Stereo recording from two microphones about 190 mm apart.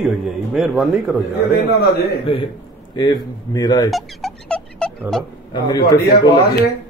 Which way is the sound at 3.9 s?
5° left (ahead or behind).